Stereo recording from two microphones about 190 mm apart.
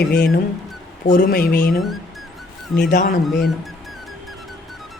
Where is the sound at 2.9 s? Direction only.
40° left (ahead or behind).